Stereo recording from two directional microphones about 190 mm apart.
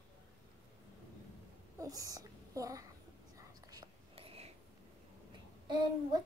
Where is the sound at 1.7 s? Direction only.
20° right (ahead or behind).